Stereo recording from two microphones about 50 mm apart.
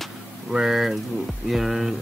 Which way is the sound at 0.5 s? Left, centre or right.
Centre.